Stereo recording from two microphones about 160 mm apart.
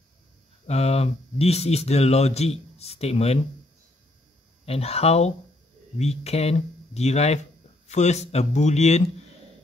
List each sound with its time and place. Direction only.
0.7 s speech: 40° left (ahead or behind)
4.6 s speech: 40° left (ahead or behind)